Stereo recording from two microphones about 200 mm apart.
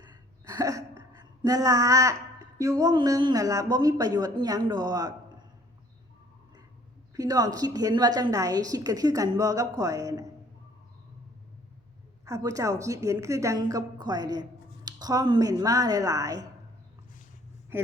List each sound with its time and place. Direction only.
0.0 s a sound: 20° right (ahead or behind)
2.6 s a woman's voice: 15° right (ahead or behind)
7.2 s a woman's voice: 20° right (ahead or behind)
12.2 s a woman's voice: 15° right (ahead or behind)